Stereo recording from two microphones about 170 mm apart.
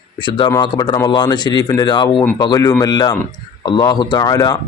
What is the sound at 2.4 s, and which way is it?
Speech, 25° left (ahead or behind).